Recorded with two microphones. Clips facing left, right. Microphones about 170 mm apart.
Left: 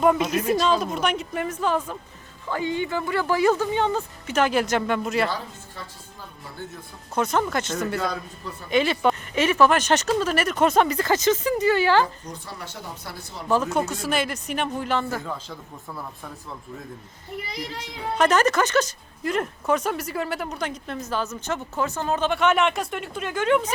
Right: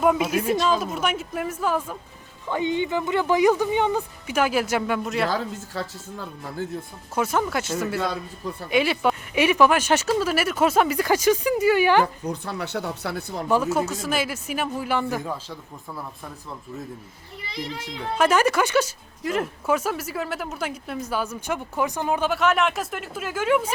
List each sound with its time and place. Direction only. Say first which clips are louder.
0.0 s a woman's voice: even; 5° right (ahead or behind)
2.5 s speech: right 2 dB; 20° right (ahead or behind); by 5.3 s centre (ahead or behind)
5.3 s speech: right 5 dB; 90° right
7.2 s speech: even; 5° right (ahead or behind)
12.3 s speech: right 8 dB; 65° right (ahead or behind)
13.5 s a woman's voice: even; 5° right (ahead or behind)
15.4 s a woman's voice: even; 5° right (ahead or behind)
18.2 s speech: even; 10° right (ahead or behind)